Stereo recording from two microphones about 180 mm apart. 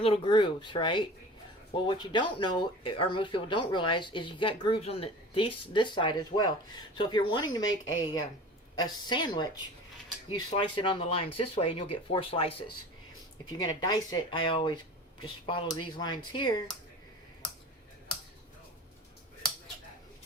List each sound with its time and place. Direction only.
0.0 s speech: 30° left (ahead or behind)
7.6 s speech: 90° left
8.8 s speech: 25° left (ahead or behind)